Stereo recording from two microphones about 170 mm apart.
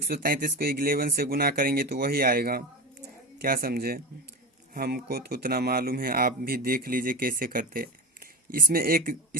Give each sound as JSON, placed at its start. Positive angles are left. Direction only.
{"t": 0.1, "sound": "speech", "side_deg": -55}